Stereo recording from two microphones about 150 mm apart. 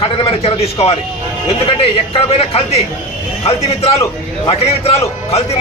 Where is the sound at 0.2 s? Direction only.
40° left (ahead or behind).